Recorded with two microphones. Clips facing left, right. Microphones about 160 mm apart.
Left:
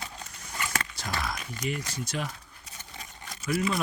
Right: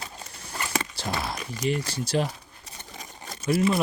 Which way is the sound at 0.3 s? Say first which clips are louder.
Right 2 dB; 30° right (ahead or behind).